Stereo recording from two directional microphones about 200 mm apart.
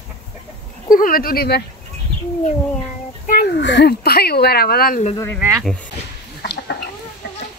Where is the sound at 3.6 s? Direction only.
60° left (ahead or behind).